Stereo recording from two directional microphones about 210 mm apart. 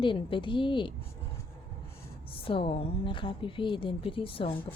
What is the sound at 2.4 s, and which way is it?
A woman's voice, 25° left (ahead or behind).